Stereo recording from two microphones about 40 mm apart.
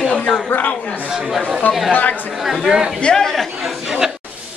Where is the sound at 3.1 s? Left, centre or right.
Centre.